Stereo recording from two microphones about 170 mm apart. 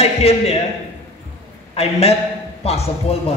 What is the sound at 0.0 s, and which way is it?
Speech, 35° left (ahead or behind).